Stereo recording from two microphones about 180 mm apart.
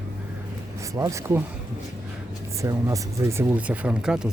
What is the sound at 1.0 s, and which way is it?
Speech, 15° right (ahead or behind).